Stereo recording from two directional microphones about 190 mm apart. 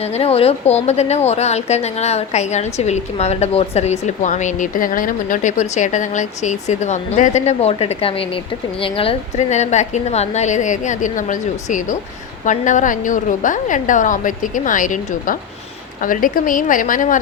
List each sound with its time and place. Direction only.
0.0 s a woman's voice: 30° left (ahead or behind)